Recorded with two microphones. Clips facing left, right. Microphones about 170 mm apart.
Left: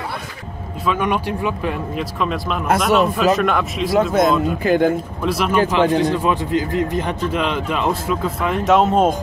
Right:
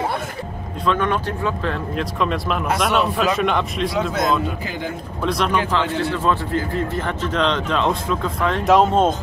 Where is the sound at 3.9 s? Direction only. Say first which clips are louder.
Left 7 dB; 50° left (ahead or behind).